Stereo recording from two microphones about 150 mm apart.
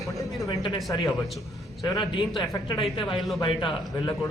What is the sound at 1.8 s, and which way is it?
A man's voice, 30° left (ahead or behind).